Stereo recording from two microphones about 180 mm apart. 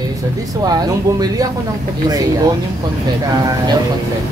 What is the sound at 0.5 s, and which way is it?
Speech, 20° right (ahead or behind).